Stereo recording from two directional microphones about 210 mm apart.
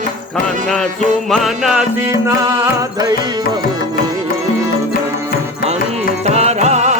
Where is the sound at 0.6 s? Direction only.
Centre (ahead or behind); by 3.2 s 15° right (ahead or behind).